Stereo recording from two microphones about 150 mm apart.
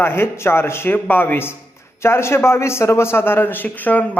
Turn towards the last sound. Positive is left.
turn(degrees=10)  # may be behind; listen again after turning